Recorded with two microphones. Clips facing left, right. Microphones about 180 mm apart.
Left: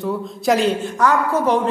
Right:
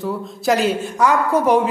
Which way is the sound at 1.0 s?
10° right (ahead or behind).